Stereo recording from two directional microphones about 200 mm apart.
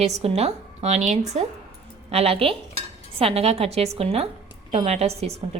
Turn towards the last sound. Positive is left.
turn(degrees=-30)  # may be behind; listen again after turning